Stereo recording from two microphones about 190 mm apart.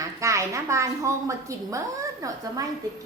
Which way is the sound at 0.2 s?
15° right (ahead or behind).